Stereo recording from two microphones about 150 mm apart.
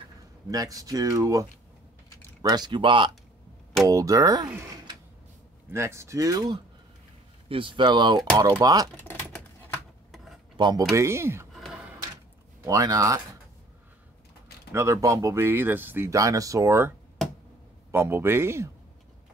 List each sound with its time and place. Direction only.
0.5 s speech: 25° right (ahead or behind)
2.4 s speech: 25° right (ahead or behind)
5.7 s speech: 20° right (ahead or behind)
8.9 s typing: 15° left (ahead or behind)
10.1 s cutlery: centre (ahead or behind)
10.5 s speech: 30° right (ahead or behind)
11.5 s gasp: 5° right (ahead or behind)
12.6 s speech: 25° right (ahead or behind)
14.7 s speech: 20° right (ahead or behind)
17.9 s a man's voice: 15° right (ahead or behind)